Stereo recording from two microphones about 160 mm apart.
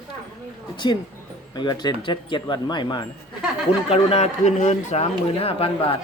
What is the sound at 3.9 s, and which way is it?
Speech, 40° left (ahead or behind).